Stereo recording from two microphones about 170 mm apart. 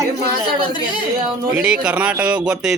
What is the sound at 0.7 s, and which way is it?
Speech, 25° left (ahead or behind).